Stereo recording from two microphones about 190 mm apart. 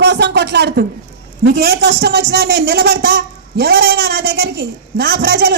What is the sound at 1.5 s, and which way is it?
A man's voice, 60° right (ahead or behind).